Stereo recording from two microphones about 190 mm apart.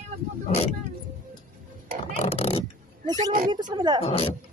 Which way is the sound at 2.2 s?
30° left (ahead or behind).